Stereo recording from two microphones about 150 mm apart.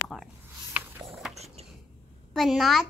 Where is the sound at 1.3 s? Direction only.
45° right (ahead or behind).